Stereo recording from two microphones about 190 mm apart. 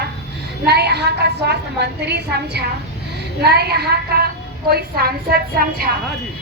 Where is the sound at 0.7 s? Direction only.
60° right (ahead or behind).